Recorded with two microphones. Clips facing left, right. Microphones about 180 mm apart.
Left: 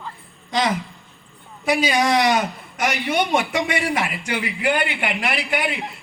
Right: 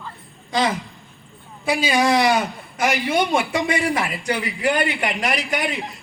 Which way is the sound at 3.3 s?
30° right (ahead or behind).